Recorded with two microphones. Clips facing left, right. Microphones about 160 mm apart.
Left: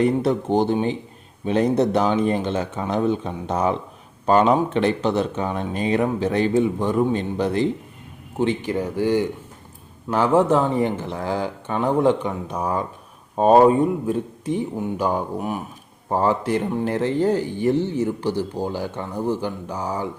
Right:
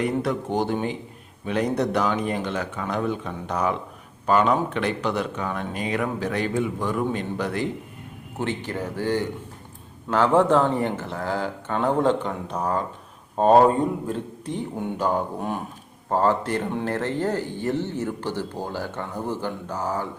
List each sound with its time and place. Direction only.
0.0 s speech: 25° left (ahead or behind)